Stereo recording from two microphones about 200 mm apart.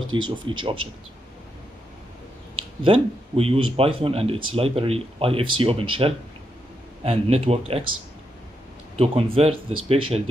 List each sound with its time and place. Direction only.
0.1 s speech: 25° right (ahead or behind)
2.8 s speech: 30° right (ahead or behind)
8.9 s speech: 30° right (ahead or behind)